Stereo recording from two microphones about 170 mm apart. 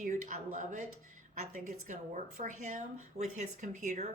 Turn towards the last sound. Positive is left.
turn(degrees=-45)  # may be behind; listen again after turning